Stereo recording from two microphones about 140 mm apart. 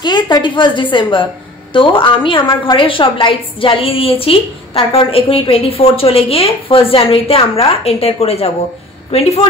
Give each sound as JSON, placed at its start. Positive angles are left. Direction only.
{"t": 0.0, "sound": "a woman's voice", "side_deg": 30}